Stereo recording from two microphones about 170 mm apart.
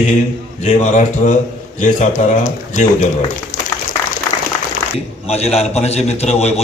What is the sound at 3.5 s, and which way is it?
Applause, 45° left (ahead or behind).